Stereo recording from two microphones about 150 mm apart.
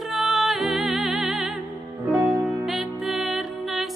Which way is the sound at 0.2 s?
Centre (ahead or behind).